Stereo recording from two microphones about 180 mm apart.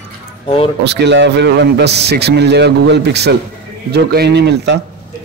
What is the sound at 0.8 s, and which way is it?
A man's voice, 70° right (ahead or behind).